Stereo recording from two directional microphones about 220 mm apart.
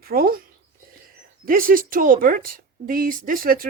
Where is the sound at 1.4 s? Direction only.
40° right (ahead or behind).